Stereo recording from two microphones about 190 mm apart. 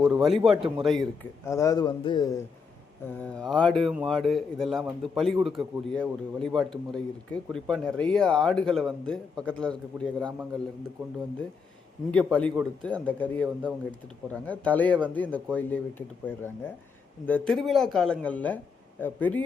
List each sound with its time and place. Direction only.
0.0 s speech: centre (ahead or behind)
1.5 s a man's voice: 15° left (ahead or behind)
3.3 s speech: 5° left (ahead or behind)
12.3 s speech: 5° left (ahead or behind)